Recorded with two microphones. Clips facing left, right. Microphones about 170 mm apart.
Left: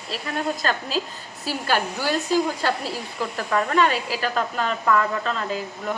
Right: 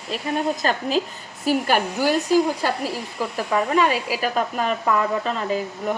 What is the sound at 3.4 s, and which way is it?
Speech, 10° right (ahead or behind).